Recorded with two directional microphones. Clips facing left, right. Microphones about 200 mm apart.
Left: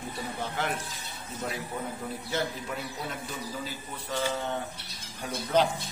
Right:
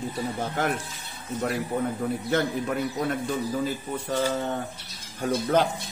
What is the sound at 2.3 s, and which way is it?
Speech, 55° right (ahead or behind).